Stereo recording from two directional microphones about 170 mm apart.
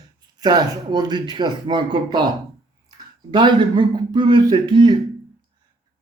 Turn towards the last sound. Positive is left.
turn(degrees=-25)  # may be behind; listen again after turning